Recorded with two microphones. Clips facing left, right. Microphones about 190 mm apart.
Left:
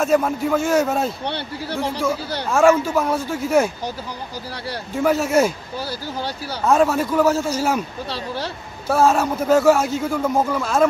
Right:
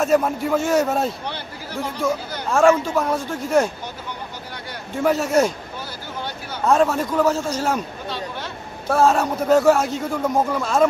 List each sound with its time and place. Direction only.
0.0 s a man's voice: centre (ahead or behind)
1.2 s speech: 35° left (ahead or behind)
2.5 s a man's voice: 5° left (ahead or behind)
5.0 s a man's voice: centre (ahead or behind)
5.8 s speech: 35° left (ahead or behind)
6.7 s a man's voice: 5° left (ahead or behind)
8.8 s a man's voice: centre (ahead or behind)